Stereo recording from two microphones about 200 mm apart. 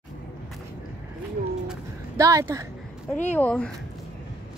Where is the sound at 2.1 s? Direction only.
15° right (ahead or behind).